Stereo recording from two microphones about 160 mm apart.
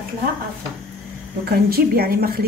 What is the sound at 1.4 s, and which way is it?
A woman's voice, 75° right (ahead or behind).